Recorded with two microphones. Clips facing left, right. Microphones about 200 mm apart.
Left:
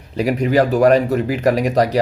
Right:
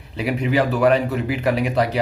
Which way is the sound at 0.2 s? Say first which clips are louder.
Left 4 dB; 40° left (ahead or behind).